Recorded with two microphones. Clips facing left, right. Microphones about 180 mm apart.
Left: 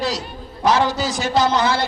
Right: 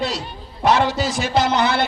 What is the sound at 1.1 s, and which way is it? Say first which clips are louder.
Speech: left 1 dB; 60° right (ahead or behind).